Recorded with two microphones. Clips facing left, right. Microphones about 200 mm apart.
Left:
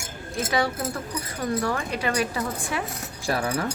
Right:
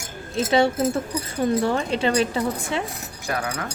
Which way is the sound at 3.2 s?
30° left (ahead or behind).